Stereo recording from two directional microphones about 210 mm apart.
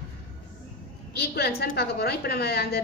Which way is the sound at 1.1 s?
50° left (ahead or behind).